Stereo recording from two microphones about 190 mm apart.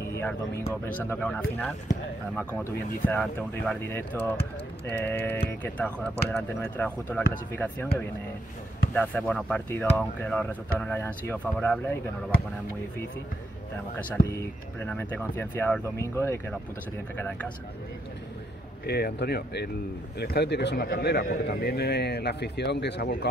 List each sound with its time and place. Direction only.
0.2 s speech: 10° left (ahead or behind)
13.9 s speech: 15° left (ahead or behind)
18.9 s speech: 55° left (ahead or behind)